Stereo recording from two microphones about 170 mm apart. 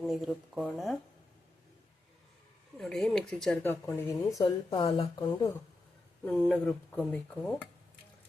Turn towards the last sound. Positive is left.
turn(degrees=5)  # may be behind; listen again after turning